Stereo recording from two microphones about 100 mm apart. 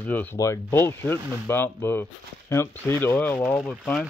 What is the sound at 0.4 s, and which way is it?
Speech, 30° left (ahead or behind).